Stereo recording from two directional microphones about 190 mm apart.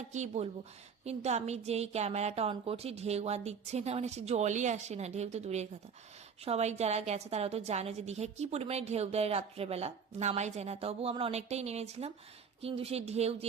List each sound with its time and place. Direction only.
0.1 s a woman's voice: 40° right (ahead or behind)